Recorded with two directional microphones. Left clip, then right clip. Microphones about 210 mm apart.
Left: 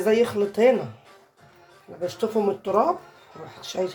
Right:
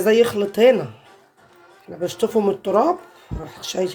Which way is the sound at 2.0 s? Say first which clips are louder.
Right 4 dB; 45° right (ahead or behind).